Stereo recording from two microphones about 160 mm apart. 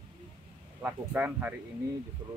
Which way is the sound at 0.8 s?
10° right (ahead or behind).